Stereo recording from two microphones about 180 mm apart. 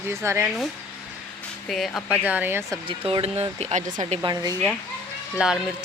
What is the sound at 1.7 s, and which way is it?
Speech, centre (ahead or behind).